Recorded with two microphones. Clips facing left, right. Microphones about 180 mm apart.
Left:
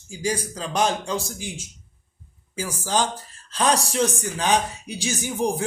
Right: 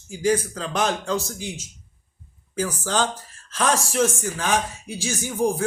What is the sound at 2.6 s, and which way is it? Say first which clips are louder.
Speech: right 1 dB; 10° left (ahead or behind).